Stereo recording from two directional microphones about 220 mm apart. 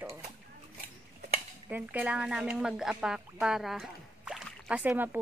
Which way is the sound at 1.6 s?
10° right (ahead or behind).